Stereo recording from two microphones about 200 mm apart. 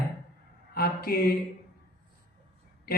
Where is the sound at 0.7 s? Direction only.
50° left (ahead or behind).